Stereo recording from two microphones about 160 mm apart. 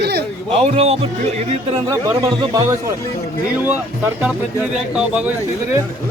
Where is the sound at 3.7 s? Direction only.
10° right (ahead or behind).